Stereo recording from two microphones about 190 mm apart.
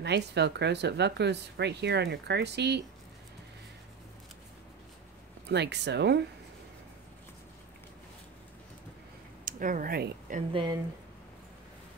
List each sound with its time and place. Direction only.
0.0 s speech: 60° right (ahead or behind)
5.5 s speech: 65° right (ahead or behind)
9.4 s speech: 45° right (ahead or behind)
10.5 s speech: 25° right (ahead or behind)